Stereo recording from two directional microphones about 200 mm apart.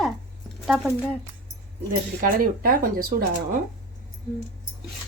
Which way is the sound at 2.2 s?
45° right (ahead or behind).